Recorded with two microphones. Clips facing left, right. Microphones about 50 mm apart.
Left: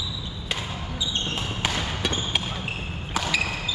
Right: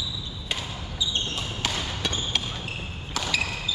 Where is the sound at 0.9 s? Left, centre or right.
Left.